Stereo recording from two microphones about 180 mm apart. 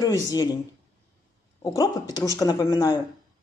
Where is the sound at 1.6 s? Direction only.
20° left (ahead or behind).